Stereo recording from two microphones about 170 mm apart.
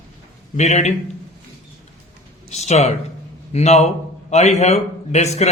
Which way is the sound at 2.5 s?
40° left (ahead or behind).